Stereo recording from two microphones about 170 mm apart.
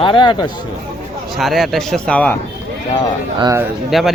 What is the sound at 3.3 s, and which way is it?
Speech, 25° right (ahead or behind).